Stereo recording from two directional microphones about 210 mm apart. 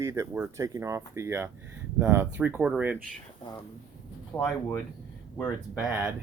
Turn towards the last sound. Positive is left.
turn(degrees=-5)  # may be behind; listen again after turning